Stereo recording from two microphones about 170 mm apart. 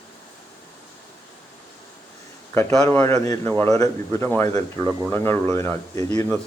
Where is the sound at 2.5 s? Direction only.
15° left (ahead or behind).